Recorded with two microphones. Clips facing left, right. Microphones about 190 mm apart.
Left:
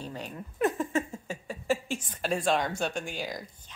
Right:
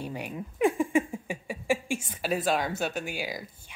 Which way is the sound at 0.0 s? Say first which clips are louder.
Right 3 dB; 10° right (ahead or behind).